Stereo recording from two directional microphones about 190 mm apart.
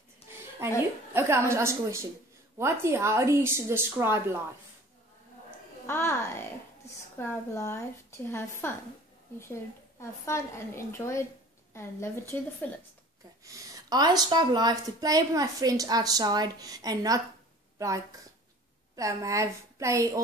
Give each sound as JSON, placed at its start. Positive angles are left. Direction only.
{"t": 0.2, "sound": "a sound", "side_deg": 30}
{"t": 1.1, "sound": "a woman's voice", "side_deg": -15}
{"t": 5.9, "sound": "a woman's voice", "side_deg": 10}
{"t": 13.4, "sound": "a woman's voice", "side_deg": -15}